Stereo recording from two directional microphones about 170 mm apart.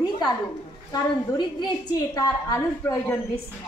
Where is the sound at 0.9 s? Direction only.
20° left (ahead or behind).